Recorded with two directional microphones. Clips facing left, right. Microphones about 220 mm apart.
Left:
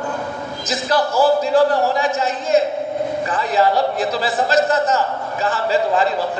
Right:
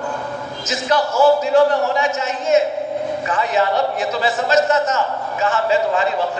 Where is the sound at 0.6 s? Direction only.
35° left (ahead or behind).